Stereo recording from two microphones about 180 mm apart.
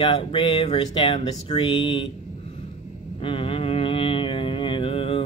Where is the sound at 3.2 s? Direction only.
30° left (ahead or behind).